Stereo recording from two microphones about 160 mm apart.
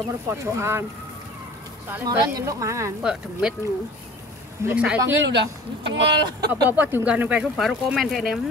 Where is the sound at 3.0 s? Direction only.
5° right (ahead or behind).